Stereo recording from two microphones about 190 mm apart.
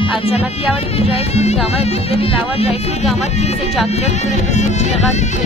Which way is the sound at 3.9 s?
35° left (ahead or behind).